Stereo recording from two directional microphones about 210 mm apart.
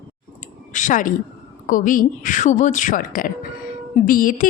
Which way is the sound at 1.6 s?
40° left (ahead or behind).